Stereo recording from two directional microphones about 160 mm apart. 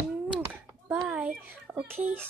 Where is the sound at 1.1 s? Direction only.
10° right (ahead or behind).